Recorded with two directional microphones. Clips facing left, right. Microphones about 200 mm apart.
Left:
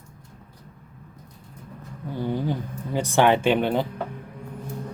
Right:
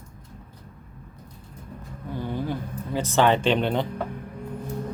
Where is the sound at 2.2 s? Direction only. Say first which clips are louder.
Left 3 dB; 15° left (ahead or behind).